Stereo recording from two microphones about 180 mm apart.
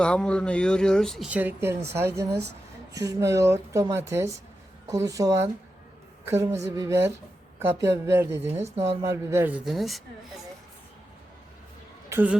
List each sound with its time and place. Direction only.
0.0 s a woman's voice: 5° left (ahead or behind); by 8.4 s 15° right (ahead or behind)
8.4 s speech: 35° right (ahead or behind)
9.0 s a woman's voice: 15° right (ahead or behind)
9.6 s speech: centre (ahead or behind)
12.0 s speech: 10° right (ahead or behind)